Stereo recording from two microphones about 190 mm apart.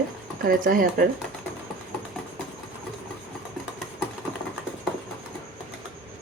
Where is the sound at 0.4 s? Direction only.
50° right (ahead or behind).